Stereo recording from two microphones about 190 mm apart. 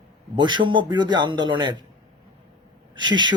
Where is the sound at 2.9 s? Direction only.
25° right (ahead or behind).